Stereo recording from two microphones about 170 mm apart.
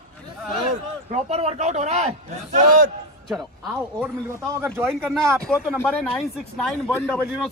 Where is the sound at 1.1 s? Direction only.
40° right (ahead or behind).